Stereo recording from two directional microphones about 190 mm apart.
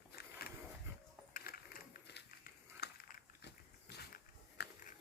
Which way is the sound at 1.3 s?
50° left (ahead or behind).